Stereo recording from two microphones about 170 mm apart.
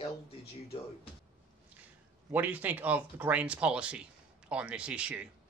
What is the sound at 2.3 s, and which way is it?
A man's voice, 10° right (ahead or behind).